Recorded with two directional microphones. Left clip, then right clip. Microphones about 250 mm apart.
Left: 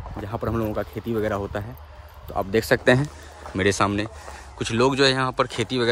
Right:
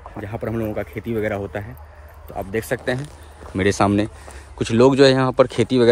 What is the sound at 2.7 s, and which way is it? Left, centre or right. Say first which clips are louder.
Speech: left 7 dB; left.